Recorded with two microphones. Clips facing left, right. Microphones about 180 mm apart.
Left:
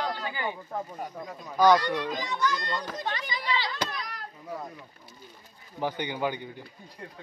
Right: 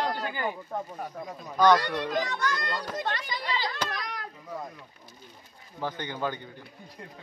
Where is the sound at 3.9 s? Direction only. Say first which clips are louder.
Right 2 dB; 90° right.